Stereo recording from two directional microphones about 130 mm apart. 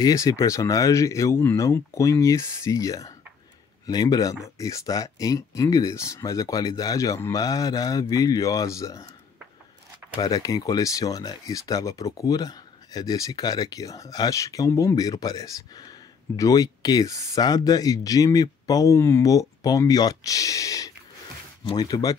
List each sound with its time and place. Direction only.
0.0 s speech: 25° left (ahead or behind)
10.2 s speech: 30° left (ahead or behind)